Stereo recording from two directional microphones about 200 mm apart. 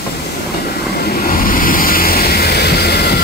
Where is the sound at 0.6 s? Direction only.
50° left (ahead or behind).